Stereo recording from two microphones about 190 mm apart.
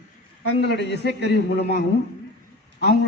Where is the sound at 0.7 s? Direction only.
65° left (ahead or behind).